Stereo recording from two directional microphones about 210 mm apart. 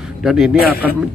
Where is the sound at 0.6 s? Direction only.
45° left (ahead or behind).